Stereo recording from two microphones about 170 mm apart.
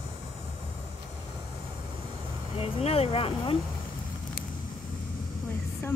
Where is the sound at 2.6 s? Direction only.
35° left (ahead or behind).